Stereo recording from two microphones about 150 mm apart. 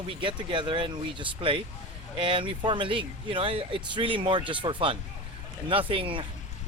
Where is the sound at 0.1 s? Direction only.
35° right (ahead or behind).